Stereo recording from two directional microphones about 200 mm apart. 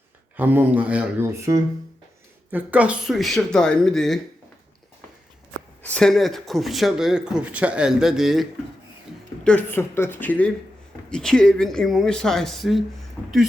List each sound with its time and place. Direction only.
0.3 s speech: 10° right (ahead or behind)
5.8 s a woman's voice: 5° left (ahead or behind)